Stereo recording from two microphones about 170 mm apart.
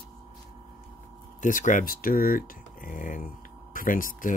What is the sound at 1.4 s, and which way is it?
Speech, 50° left (ahead or behind).